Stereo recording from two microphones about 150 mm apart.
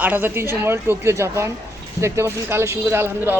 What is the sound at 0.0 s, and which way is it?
Speech, 10° right (ahead or behind).